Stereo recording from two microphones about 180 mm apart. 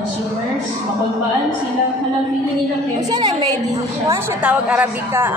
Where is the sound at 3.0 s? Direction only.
20° right (ahead or behind).